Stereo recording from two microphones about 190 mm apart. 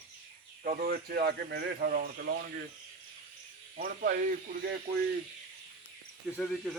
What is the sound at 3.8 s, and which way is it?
Speech, 50° right (ahead or behind).